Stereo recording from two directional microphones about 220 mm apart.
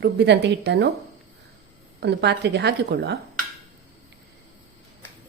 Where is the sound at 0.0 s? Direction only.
50° right (ahead or behind).